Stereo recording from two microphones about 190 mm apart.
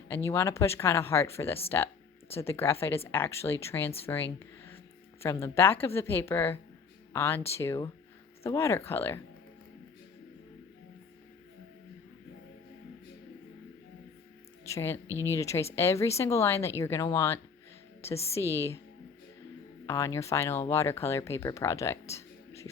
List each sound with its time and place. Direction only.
0.3 s speech: 15° left (ahead or behind)
14.6 s music: 15° left (ahead or behind)
15.0 s speech: 15° right (ahead or behind)
15.3 s speech: 15° left (ahead or behind)
19.8 s speech: 15° left (ahead or behind)
22.1 s a sound: 15° left (ahead or behind)